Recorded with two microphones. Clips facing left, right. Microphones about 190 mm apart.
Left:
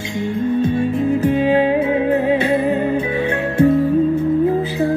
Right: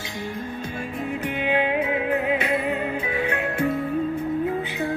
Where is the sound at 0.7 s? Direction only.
30° left (ahead or behind).